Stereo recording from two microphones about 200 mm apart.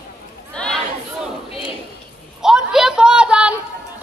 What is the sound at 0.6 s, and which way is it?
Chatter, 5° left (ahead or behind).